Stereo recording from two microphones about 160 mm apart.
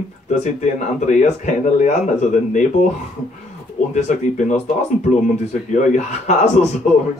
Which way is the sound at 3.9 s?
50° left (ahead or behind).